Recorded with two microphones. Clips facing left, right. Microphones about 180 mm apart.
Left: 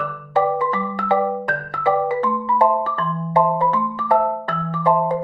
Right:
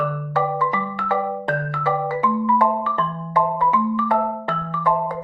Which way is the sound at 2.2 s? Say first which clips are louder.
Right 1 dB; 35° left (ahead or behind).